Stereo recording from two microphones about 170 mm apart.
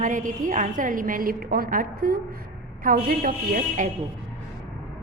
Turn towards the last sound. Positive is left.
turn(degrees=-50)  # may be behind; listen again after turning